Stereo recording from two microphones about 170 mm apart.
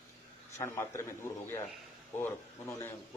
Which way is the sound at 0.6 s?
15° left (ahead or behind).